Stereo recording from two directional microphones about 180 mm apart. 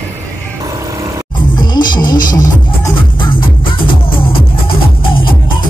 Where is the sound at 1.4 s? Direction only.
25° left (ahead or behind).